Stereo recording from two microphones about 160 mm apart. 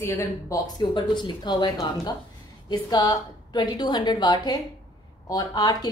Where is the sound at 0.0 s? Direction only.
20° left (ahead or behind).